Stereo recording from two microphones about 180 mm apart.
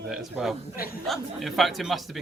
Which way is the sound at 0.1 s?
5° right (ahead or behind).